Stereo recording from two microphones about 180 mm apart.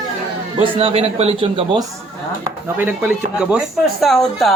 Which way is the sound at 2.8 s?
5° right (ahead or behind).